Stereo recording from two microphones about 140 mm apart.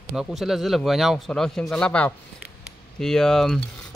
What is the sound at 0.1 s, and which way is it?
Speech, 5° right (ahead or behind).